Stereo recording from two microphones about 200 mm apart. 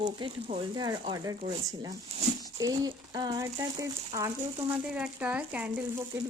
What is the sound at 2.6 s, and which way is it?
Speech, 20° right (ahead or behind).